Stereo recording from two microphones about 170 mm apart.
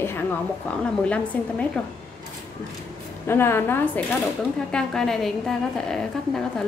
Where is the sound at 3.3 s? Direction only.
15° left (ahead or behind).